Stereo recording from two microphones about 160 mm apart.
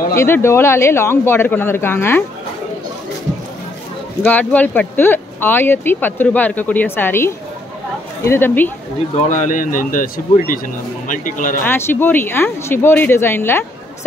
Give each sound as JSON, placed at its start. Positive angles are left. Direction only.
{"t": 0.1, "sound": "speech", "side_deg": 15}
{"t": 4.2, "sound": "speech", "side_deg": 10}
{"t": 9.3, "sound": "speech", "side_deg": 50}
{"t": 11.6, "sound": "speech", "side_deg": 15}